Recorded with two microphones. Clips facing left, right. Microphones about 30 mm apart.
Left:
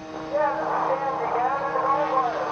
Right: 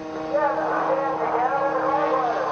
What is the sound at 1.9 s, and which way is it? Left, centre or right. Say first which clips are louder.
Vehicle: right 1 dB; centre.